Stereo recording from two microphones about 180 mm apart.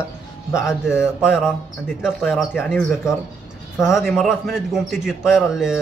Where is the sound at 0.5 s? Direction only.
15° left (ahead or behind).